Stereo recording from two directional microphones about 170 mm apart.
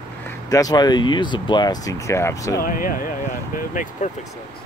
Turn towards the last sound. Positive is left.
turn(degrees=50)  # may be behind; listen again after turning